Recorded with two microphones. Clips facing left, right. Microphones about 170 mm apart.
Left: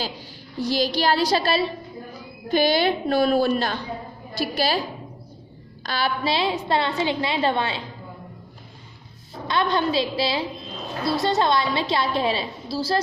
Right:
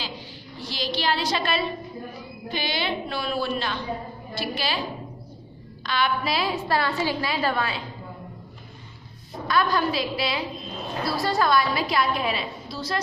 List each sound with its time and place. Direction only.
0.6 s a woman's voice: 40° left (ahead or behind)
2.5 s a woman's voice: 45° left (ahead or behind)
5.9 s a woman's voice: 35° left (ahead or behind)
9.5 s a woman's voice: 25° left (ahead or behind)